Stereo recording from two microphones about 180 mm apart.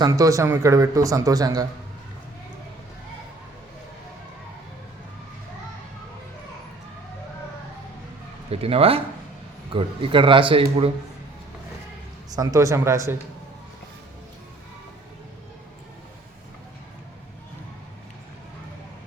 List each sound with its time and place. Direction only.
0.0 s speech: 20° right (ahead or behind)
8.4 s speech: 30° right (ahead or behind)
12.3 s speech: 20° right (ahead or behind)